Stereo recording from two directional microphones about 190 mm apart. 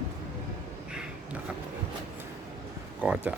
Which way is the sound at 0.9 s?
5° right (ahead or behind).